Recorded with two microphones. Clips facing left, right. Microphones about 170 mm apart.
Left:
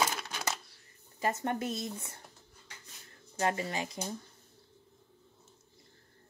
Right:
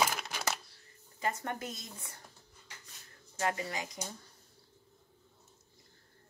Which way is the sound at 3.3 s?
25° left (ahead or behind).